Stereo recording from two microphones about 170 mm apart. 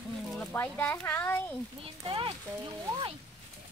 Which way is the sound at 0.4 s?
10° left (ahead or behind).